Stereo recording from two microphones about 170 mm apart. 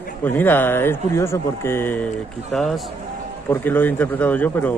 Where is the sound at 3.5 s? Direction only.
10° left (ahead or behind).